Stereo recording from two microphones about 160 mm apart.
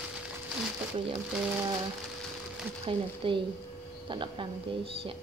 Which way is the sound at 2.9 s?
35° right (ahead or behind).